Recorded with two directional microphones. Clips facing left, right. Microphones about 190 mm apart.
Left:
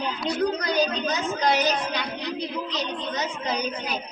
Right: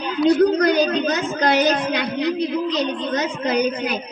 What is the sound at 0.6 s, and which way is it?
A woman's voice, 60° right (ahead or behind).